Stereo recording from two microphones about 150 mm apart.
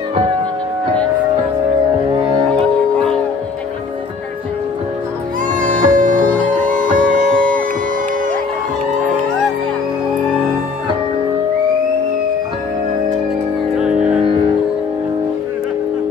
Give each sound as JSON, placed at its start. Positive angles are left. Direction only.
{"t": 2.5, "sound": "music", "side_deg": 5}
{"t": 5.5, "sound": "music", "side_deg": -60}
{"t": 7.3, "sound": "music", "side_deg": -65}
{"t": 13.7, "sound": "music", "side_deg": -5}